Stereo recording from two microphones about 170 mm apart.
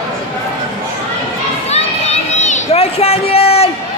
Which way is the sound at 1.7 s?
40° left (ahead or behind).